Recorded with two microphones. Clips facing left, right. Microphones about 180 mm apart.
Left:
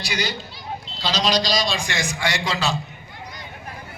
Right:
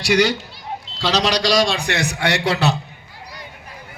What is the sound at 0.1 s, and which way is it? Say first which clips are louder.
A man's voice: right 12 dB; 80° right.